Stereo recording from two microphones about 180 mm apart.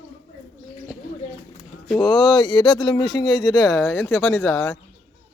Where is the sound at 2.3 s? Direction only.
25° left (ahead or behind).